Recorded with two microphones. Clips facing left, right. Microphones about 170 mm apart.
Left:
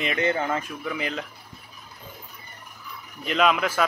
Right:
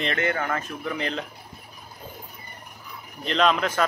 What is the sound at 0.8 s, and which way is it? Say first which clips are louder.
Speech: right 3 dB; 5° left (ahead or behind).